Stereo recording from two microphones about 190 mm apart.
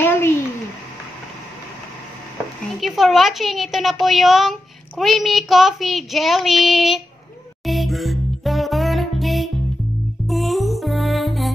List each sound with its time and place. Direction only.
0.0 s a sound: 10° left (ahead or behind)
2.8 s a woman's voice: centre (ahead or behind)
7.6 s music: centre (ahead or behind)